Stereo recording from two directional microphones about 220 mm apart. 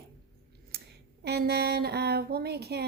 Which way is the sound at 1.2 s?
45° right (ahead or behind).